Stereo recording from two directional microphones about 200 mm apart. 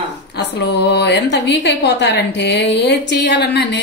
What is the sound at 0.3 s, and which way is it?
A woman's voice, 60° left (ahead or behind).